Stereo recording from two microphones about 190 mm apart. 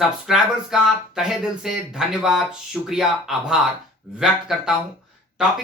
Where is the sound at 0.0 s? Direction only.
Centre (ahead or behind).